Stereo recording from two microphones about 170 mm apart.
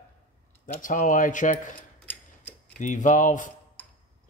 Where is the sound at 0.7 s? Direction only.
50° left (ahead or behind).